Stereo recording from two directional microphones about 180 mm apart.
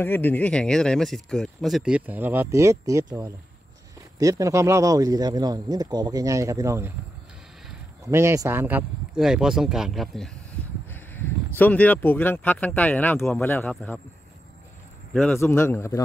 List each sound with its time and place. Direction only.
0.0 s a man's voice: 10° left (ahead or behind); by 6.9 s 15° right (ahead or behind)
8.1 s speech: 15° right (ahead or behind); by 14.0 s 5° left (ahead or behind)
15.1 s a man's voice: 10° left (ahead or behind)